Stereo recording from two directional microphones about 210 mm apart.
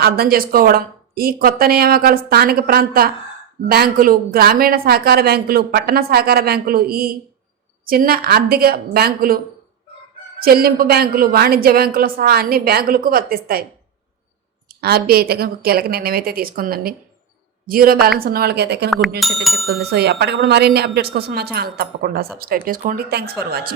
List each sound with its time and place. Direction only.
0.0 s a woman's voice: 45° right (ahead or behind)
10.4 s a woman's voice: 45° right (ahead or behind)
14.8 s a woman's voice: 50° right (ahead or behind)
19.2 s speech: centre (ahead or behind)
19.6 s a woman's voice: 50° right (ahead or behind)